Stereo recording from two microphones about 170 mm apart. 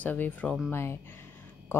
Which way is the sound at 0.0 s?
10° left (ahead or behind).